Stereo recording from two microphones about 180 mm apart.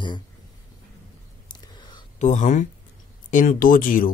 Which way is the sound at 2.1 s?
40° left (ahead or behind).